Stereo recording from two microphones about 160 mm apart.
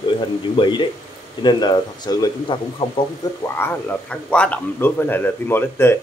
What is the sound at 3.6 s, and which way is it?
Speech, 10° left (ahead or behind).